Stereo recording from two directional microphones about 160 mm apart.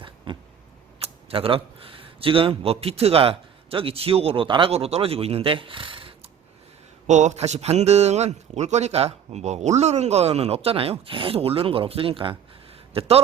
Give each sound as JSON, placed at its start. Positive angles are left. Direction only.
{"t": 0.3, "sound": "a sound", "side_deg": -30}
{"t": 0.9, "sound": "speech", "side_deg": -35}
{"t": 7.1, "sound": "a man's voice", "side_deg": -45}